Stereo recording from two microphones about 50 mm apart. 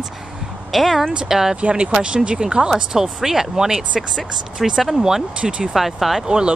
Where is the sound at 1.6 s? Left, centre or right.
Right.